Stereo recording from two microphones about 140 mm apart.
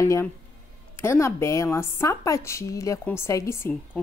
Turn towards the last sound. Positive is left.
turn(degrees=20)  # may be behind; listen again after turning